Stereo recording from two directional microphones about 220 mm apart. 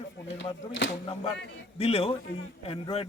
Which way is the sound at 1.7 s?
25° left (ahead or behind).